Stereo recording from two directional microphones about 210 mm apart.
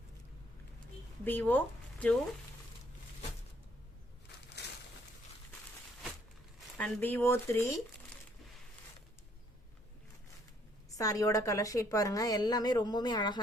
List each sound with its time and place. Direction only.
1.2 s speech: 10° left (ahead or behind)
6.7 s a woman's voice: 5° left (ahead or behind)
10.9 s a woman's voice: 15° left (ahead or behind)